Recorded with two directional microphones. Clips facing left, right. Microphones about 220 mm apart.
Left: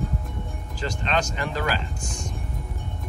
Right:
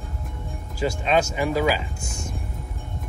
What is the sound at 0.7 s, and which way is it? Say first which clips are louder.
Speech: right 5 dB; 10° right (ahead or behind).